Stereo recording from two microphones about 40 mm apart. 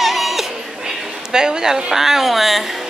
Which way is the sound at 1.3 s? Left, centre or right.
Centre.